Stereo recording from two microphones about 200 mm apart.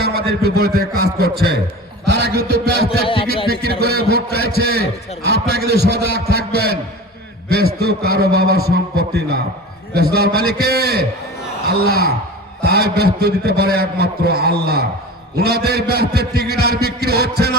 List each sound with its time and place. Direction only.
0.0 s a man's voice: 55° right (ahead or behind)